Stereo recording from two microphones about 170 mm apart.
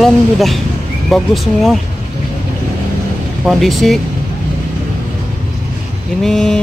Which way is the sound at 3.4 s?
Centre (ahead or behind).